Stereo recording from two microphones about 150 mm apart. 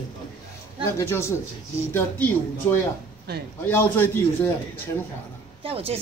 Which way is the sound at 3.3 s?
90° right.